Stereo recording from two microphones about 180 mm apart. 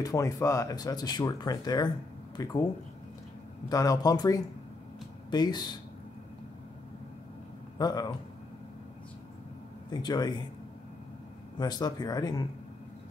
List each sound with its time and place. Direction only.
0.0 s speech: 20° left (ahead or behind)
3.6 s speech: 20° left (ahead or behind)
7.8 s speech: 20° left (ahead or behind)
9.8 s speech: 20° left (ahead or behind)
11.5 s speech: 20° left (ahead or behind)